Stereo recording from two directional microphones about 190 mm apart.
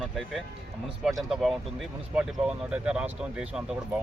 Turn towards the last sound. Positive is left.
turn(degrees=-5)  # may be behind; listen again after turning